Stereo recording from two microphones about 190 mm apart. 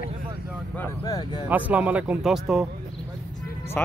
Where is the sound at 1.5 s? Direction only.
5° right (ahead or behind).